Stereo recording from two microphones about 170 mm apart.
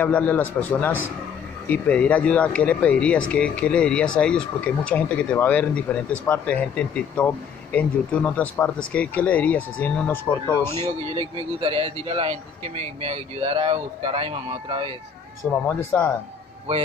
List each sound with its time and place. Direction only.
0.0 s speech: 10° left (ahead or behind)
10.9 s a man's voice: 30° right (ahead or behind)
15.4 s speech: 5° left (ahead or behind)